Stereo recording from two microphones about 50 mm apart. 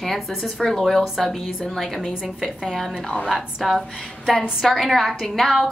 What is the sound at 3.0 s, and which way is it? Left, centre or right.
Speech, centre.